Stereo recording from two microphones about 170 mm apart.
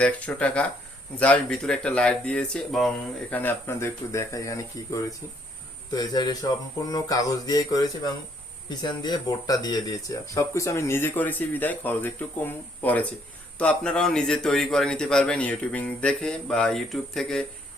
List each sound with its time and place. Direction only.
0.0 s speech: 5° left (ahead or behind)
5.9 s a sound: 25° left (ahead or behind)
8.7 s a man's voice: 25° left (ahead or behind); by 17.4 s 5° left (ahead or behind)